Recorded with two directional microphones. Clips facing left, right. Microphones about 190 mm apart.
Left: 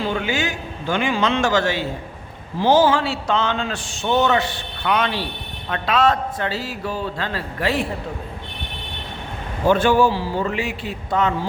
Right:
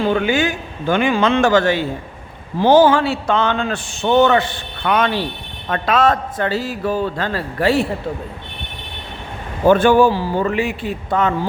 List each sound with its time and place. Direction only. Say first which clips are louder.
0.1 s a man's voice: right 6 dB; 55° right (ahead or behind)
9.6 s a man's voice: right 4 dB; 55° right (ahead or behind)